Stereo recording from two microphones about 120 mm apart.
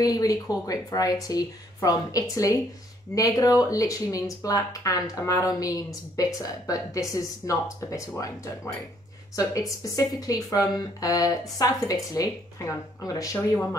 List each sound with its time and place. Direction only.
0.0 s a woman's voice: 30° left (ahead or behind)